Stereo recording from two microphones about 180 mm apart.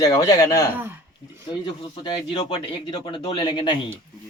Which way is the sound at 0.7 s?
10° right (ahead or behind).